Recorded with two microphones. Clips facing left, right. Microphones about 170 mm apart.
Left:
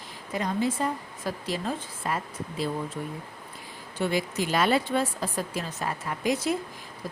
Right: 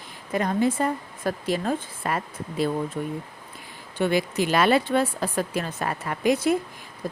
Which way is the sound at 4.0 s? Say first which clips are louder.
Right 4 dB; 65° right (ahead or behind).